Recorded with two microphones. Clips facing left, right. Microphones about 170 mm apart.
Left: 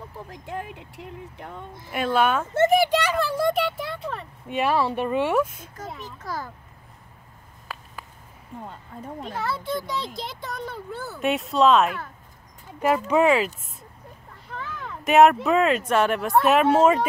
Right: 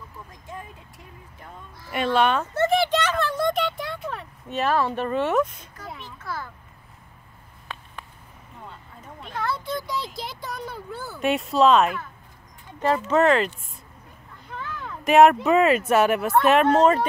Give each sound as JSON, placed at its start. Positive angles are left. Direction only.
{"t": 0.3, "sound": "speech", "side_deg": 70}
{"t": 1.9, "sound": "speech", "side_deg": 0}
{"t": 2.5, "sound": "speech", "side_deg": 15}
{"t": 5.9, "sound": "a sound", "side_deg": 40}
{"t": 7.7, "sound": "a sound", "side_deg": 5}
{"t": 8.5, "sound": "speech", "side_deg": 50}
{"t": 9.3, "sound": "speech", "side_deg": 5}
{"t": 12.9, "sound": "speech", "side_deg": 15}
{"t": 14.5, "sound": "speech", "side_deg": 0}